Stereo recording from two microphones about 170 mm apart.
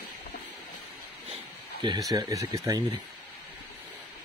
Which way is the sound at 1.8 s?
25° right (ahead or behind).